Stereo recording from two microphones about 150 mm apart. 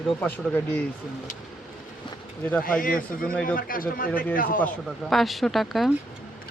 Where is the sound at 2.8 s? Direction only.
65° left (ahead or behind).